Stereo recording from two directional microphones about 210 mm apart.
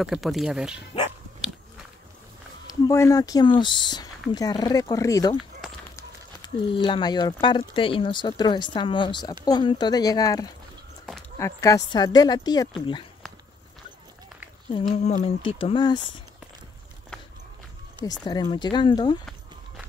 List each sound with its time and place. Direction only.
0.0 s speech: centre (ahead or behind)
2.7 s speech: 15° left (ahead or behind)
14.7 s speech: 20° left (ahead or behind)
18.2 s speech: 20° left (ahead or behind)